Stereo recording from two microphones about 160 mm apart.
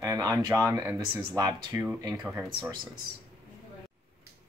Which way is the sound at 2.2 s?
5° right (ahead or behind).